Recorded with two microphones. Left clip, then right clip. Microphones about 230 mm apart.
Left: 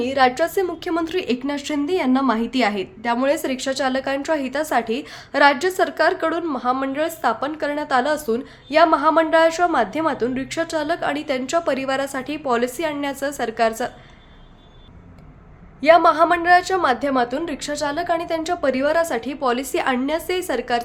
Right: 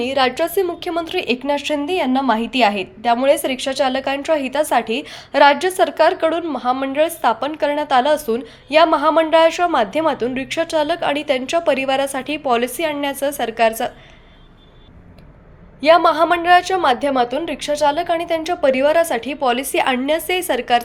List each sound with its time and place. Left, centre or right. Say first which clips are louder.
0.0 s a woman's voice: even; centre
15.8 s a woman's voice: right 1 dB; centre